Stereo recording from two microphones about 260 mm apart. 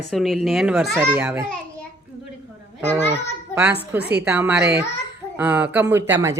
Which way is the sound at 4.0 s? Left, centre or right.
Right.